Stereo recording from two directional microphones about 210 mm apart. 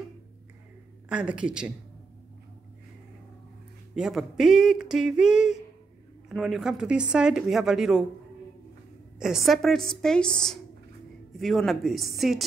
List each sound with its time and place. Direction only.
1.0 s speech: 5° right (ahead or behind)
3.9 s speech: centre (ahead or behind)
9.2 s speech: centre (ahead or behind)